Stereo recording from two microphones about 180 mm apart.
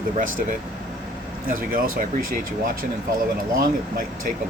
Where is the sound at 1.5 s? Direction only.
50° right (ahead or behind).